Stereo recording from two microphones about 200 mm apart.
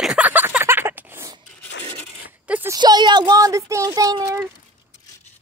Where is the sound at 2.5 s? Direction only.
10° right (ahead or behind).